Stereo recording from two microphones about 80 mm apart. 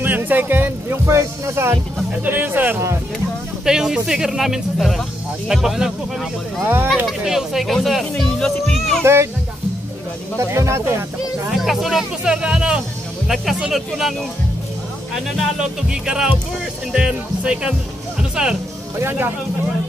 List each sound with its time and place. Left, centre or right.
0.0 s music: right
2.2 s speech: right
3.6 s speech: centre
6.6 s speech: right
7.1 s speech: centre
8.7 s music: centre
9.0 s speech: right
10.4 s speech: right
11.5 s speech: centre
15.9 s speech: centre
18.9 s speech: right